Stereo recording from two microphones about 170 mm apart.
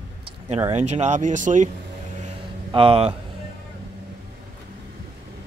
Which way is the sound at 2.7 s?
30° right (ahead or behind).